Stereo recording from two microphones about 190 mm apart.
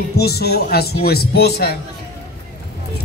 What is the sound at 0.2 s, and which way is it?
A man's voice, 55° left (ahead or behind).